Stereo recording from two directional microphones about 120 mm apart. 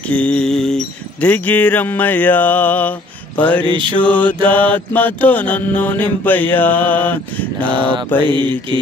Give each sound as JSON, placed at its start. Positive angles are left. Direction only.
{"t": 0.1, "sound": "a sound", "side_deg": 10}
{"t": 3.3, "sound": "mantra", "side_deg": 15}
{"t": 3.6, "sound": "mantra", "side_deg": -45}
{"t": 4.0, "sound": "mantra", "side_deg": 10}
{"t": 7.6, "sound": "mantra", "side_deg": -45}